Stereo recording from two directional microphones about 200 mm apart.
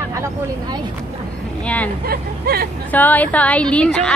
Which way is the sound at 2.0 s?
50° right (ahead or behind).